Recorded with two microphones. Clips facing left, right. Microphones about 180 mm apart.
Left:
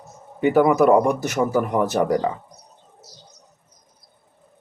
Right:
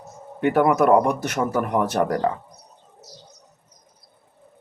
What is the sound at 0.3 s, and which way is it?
Speech, centre (ahead or behind).